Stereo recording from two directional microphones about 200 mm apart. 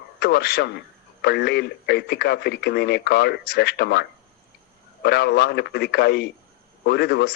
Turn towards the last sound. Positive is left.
turn(degrees=55)  # may be behind; listen again after turning